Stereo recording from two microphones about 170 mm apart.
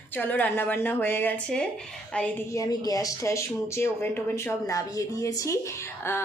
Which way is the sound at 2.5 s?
20° left (ahead or behind).